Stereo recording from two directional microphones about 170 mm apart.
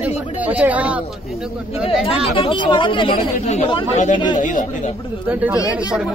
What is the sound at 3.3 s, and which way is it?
Speech, 45° left (ahead or behind).